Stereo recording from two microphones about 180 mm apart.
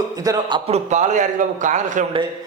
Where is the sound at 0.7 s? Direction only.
40° right (ahead or behind).